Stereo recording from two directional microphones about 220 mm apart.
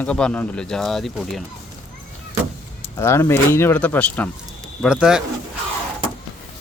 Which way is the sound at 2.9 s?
10° left (ahead or behind).